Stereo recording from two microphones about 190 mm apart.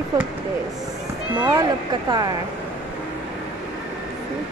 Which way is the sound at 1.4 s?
20° right (ahead or behind).